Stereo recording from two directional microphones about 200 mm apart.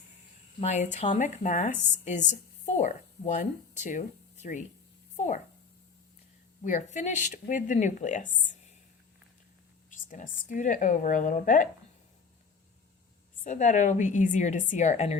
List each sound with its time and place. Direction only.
0.6 s a woman's voice: 35° left (ahead or behind)
5.1 s a sound: 35° left (ahead or behind)
6.7 s a woman's voice: 40° left (ahead or behind)
9.9 s a woman's voice: 40° left (ahead or behind)
13.4 s a woman's voice: 40° left (ahead or behind)